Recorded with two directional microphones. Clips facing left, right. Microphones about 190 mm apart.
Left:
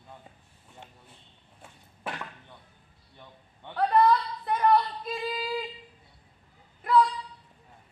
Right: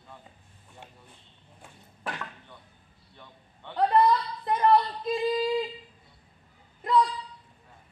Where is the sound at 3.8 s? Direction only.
30° right (ahead or behind).